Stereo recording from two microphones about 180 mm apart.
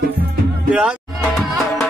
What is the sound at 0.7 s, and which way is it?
Music, centre (ahead or behind).